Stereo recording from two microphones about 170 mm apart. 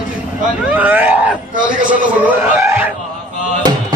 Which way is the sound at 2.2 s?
15° right (ahead or behind).